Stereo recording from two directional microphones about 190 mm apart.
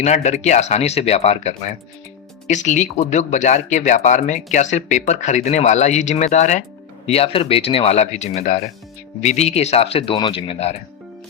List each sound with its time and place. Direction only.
0.0 s speech: 35° left (ahead or behind)